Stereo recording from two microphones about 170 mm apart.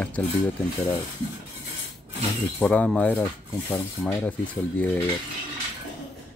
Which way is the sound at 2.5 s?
10° left (ahead or behind).